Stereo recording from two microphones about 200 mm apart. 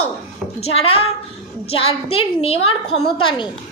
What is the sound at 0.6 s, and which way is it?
A woman's voice, 30° left (ahead or behind).